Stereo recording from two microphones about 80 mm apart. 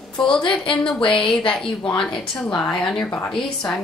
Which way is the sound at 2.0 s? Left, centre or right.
Centre.